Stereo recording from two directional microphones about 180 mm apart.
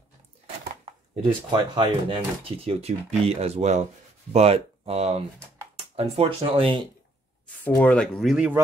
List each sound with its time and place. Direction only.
0.8 s speech: 30° right (ahead or behind)
7.6 s speech: 10° left (ahead or behind)